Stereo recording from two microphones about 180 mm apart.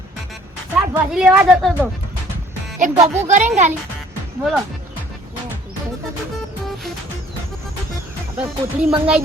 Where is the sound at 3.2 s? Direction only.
40° right (ahead or behind).